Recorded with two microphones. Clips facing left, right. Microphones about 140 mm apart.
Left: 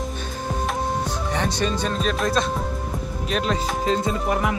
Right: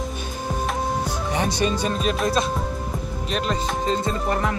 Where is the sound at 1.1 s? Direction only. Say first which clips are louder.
Right 1 dB; 10° right (ahead or behind).